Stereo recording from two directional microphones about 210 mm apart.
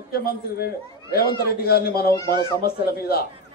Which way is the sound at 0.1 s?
45° left (ahead or behind).